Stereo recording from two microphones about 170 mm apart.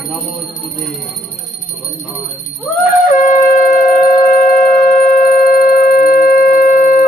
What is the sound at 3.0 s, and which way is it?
Wind instrument, 50° left (ahead or behind).